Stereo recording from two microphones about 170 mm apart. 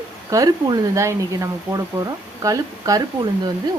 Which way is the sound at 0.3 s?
20° right (ahead or behind).